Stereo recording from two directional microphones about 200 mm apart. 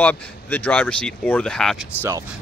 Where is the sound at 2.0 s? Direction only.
10° right (ahead or behind).